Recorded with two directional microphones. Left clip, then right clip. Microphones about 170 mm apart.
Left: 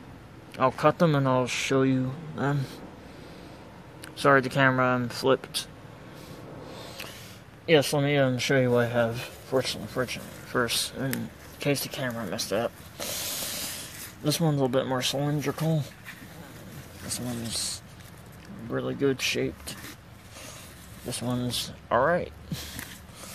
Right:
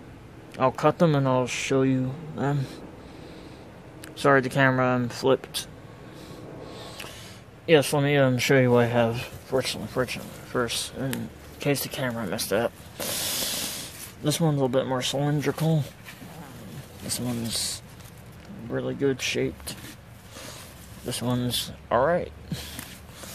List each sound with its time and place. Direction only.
0.6 s speech: 5° right (ahead or behind)
4.0 s speech: 10° right (ahead or behind)
6.7 s a sound: 10° right (ahead or behind)
7.6 s speech: 5° right (ahead or behind)
10.5 s speech: centre (ahead or behind)
11.6 s speech: 10° right (ahead or behind); by 13.8 s 25° right (ahead or behind)
14.2 s speech: 10° right (ahead or behind)
15.1 s speech: 15° right (ahead or behind)
17.1 s speech: 25° right (ahead or behind)
18.7 s speech: centre (ahead or behind)
21.1 s speech: 15° right (ahead or behind); by 22.3 s centre (ahead or behind)